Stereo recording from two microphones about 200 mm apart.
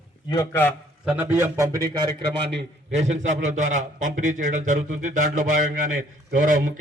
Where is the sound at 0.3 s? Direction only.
20° left (ahead or behind).